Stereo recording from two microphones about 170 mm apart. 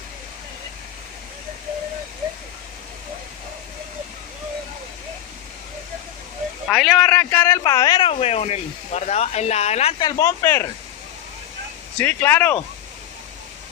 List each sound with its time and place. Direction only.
6.7 s speech: 5° left (ahead or behind); by 10.0 s 40° left (ahead or behind)
10.0 s speech: 15° left (ahead or behind)
12.0 s speech: 10° left (ahead or behind)